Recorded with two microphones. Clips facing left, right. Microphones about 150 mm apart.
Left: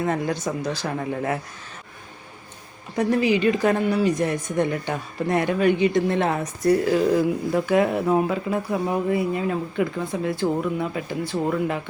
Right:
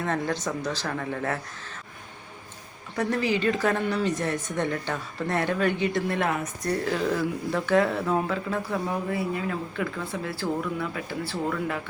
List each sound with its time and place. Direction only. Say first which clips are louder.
0.0 s speech: left 4 dB; 10° left (ahead or behind)
2.9 s speech: left 5 dB; 15° left (ahead or behind)